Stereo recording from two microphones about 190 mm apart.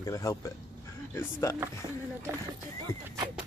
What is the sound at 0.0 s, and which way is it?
Speech, 15° left (ahead or behind).